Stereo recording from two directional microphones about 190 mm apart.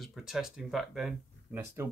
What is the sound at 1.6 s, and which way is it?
Speech, 15° right (ahead or behind).